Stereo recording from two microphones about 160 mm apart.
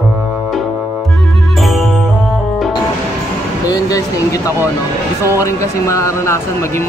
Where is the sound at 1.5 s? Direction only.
Centre (ahead or behind).